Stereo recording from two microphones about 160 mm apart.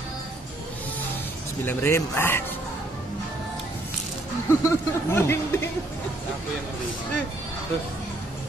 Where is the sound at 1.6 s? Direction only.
15° left (ahead or behind).